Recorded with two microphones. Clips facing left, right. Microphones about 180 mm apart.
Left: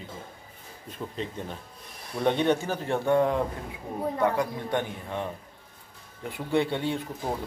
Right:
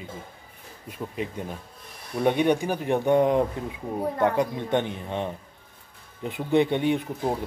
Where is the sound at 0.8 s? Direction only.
10° right (ahead or behind).